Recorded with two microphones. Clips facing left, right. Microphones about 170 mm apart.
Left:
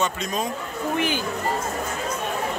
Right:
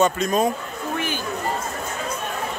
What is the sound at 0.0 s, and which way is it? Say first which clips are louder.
Speech: right 7 dB; 50° right (ahead or behind).